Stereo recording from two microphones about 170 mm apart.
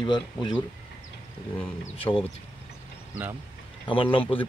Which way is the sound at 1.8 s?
35° left (ahead or behind).